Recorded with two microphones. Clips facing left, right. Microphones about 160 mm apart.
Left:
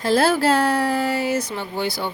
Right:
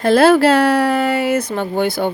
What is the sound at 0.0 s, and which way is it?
Speech, 65° right (ahead or behind).